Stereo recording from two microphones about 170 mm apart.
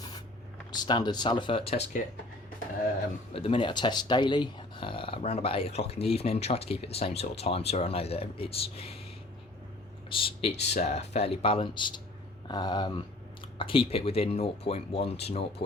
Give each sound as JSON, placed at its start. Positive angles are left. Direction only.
{"t": 0.7, "sound": "speech", "side_deg": 25}
{"t": 3.3, "sound": "speech", "side_deg": 30}
{"t": 10.1, "sound": "speech", "side_deg": 30}